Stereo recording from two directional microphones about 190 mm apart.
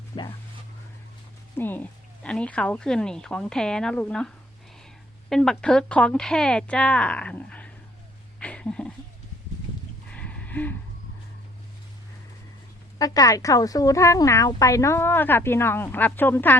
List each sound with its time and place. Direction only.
0.1 s speech: 25° left (ahead or behind)
1.5 s speech: 10° left (ahead or behind)
5.3 s speech: 5° left (ahead or behind)
8.4 s a sound: 5° left (ahead or behind)
10.1 s a sound: 5° left (ahead or behind)
13.0 s speech: 20° left (ahead or behind)